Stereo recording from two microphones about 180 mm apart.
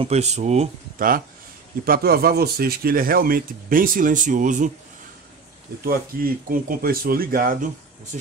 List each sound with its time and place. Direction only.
0.0 s speech: 35° right (ahead or behind)
5.9 s speech: 55° right (ahead or behind)